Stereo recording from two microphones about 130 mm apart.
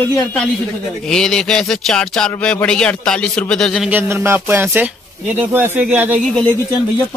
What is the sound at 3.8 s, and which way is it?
Speech, 15° right (ahead or behind).